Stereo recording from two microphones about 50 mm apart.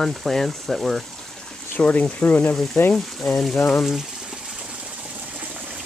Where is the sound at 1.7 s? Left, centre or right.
Left.